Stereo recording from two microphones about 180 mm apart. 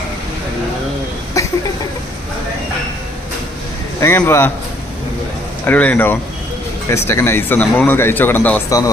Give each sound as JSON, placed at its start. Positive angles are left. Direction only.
{"t": 1.4, "sound": "a sound", "side_deg": 20}
{"t": 4.0, "sound": "a man's voice", "side_deg": 15}
{"t": 5.6, "sound": "a man's voice", "side_deg": 10}